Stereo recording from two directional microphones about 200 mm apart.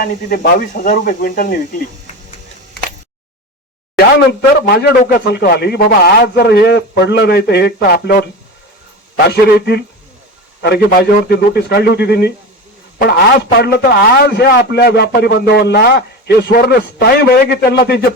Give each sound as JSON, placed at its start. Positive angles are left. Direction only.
{"t": 0.0, "sound": "a man's voice", "side_deg": 50}
{"t": 3.9, "sound": "a man's voice", "side_deg": 50}
{"t": 9.3, "sound": "a man's voice", "side_deg": 55}